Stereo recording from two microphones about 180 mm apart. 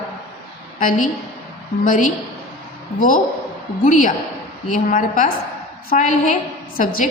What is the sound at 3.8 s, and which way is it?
A woman's voice, 45° left (ahead or behind).